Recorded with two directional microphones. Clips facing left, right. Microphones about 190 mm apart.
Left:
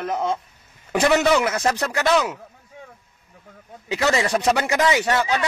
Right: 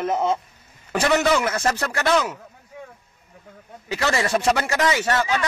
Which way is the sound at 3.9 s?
15° left (ahead or behind).